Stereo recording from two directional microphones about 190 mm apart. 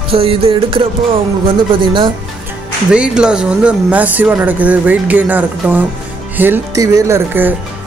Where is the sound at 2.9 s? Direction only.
5° right (ahead or behind).